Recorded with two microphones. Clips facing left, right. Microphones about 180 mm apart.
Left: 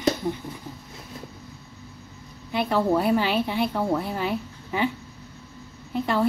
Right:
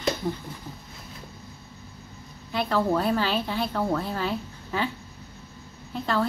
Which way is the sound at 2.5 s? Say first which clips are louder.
Left 2 dB; 15° left (ahead or behind).